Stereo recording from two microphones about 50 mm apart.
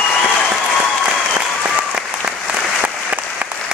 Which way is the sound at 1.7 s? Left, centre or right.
Right.